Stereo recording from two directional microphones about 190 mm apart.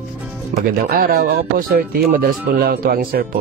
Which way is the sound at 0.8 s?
50° right (ahead or behind).